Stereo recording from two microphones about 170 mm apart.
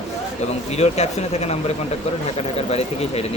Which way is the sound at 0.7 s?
40° left (ahead or behind).